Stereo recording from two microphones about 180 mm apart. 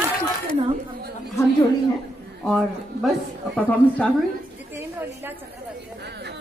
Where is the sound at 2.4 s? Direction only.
Centre (ahead or behind).